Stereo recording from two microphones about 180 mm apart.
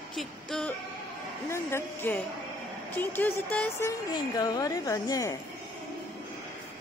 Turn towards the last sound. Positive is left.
turn(degrees=20)  # may be behind; listen again after turning